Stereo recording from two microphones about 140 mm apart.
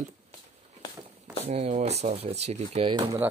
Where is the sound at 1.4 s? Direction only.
50° right (ahead or behind).